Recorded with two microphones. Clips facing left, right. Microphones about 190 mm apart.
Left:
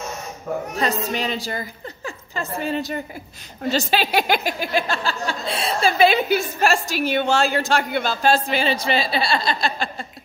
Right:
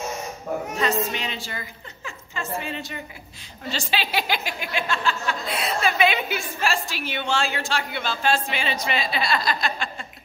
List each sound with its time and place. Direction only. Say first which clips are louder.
0.7 s a woman's voice: left 1 dB; 35° left (ahead or behind)
4.6 s a woman's voice: left 5 dB; 35° left (ahead or behind)